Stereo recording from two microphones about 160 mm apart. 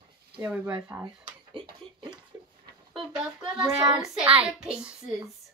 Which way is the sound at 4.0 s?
5° right (ahead or behind).